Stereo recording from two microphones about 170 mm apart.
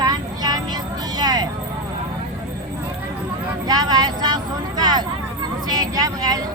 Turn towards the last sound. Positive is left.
turn(degrees=-20)  # may be behind; listen again after turning